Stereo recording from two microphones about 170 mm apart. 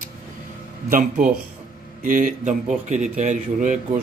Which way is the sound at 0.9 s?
50° right (ahead or behind).